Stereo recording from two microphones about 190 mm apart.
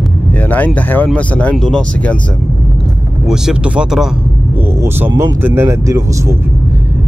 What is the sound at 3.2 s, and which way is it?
Speech, 5° right (ahead or behind).